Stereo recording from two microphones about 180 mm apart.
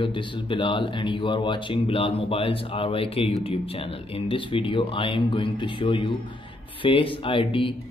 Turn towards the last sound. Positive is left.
turn(degrees=30)  # may be behind; listen again after turning